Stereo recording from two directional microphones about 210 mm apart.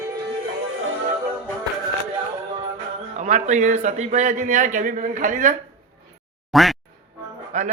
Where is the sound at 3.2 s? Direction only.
30° right (ahead or behind).